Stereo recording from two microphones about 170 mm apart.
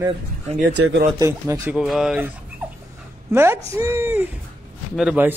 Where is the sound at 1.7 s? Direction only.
5° right (ahead or behind).